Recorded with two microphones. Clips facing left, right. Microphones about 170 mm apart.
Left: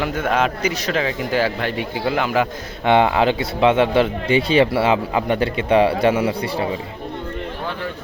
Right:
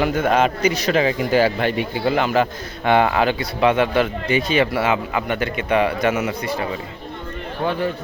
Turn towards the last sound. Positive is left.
turn(degrees=30)  # may be behind; listen again after turning